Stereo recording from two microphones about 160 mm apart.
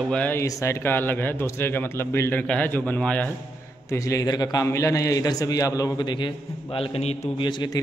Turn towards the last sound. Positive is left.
turn(degrees=30)  # may be behind; listen again after turning